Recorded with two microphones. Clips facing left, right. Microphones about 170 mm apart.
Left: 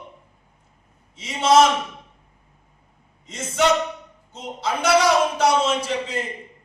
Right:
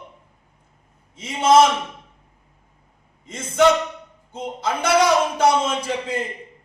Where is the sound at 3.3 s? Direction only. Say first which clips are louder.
Even; 50° right (ahead or behind).